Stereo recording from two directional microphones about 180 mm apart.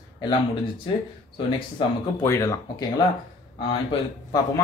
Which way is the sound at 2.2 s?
15° left (ahead or behind).